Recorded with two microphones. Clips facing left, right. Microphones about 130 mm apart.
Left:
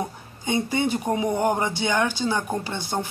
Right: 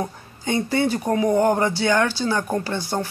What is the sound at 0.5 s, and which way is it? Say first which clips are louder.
Speech: right 2 dB; 15° left (ahead or behind).